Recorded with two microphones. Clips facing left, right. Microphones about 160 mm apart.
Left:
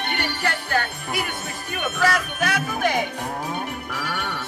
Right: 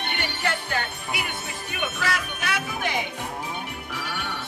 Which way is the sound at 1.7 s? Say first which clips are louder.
Left 6 dB; 45° left (ahead or behind).